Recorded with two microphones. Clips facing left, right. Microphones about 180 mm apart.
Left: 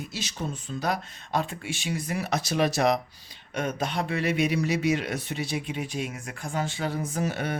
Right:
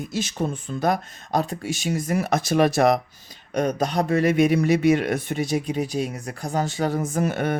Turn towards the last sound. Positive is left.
turn(degrees=-50)  # may be behind; listen again after turning